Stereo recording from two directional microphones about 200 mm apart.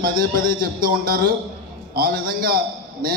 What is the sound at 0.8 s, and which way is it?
Speech, 45° right (ahead or behind).